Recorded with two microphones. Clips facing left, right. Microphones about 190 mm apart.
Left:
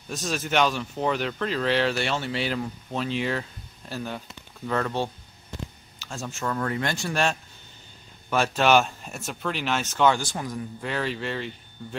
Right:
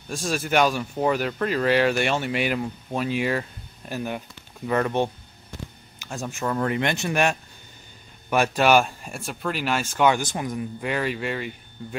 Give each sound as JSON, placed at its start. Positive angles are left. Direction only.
{"t": 0.1, "sound": "speech", "side_deg": -10}